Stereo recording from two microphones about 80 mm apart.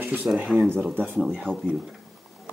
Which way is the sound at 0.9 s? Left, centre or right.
Right.